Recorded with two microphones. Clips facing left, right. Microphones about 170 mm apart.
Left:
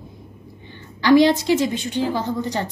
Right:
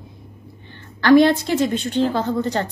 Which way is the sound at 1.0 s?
55° right (ahead or behind).